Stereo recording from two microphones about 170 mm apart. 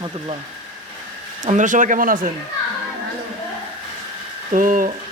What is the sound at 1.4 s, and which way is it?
Speech, 45° right (ahead or behind).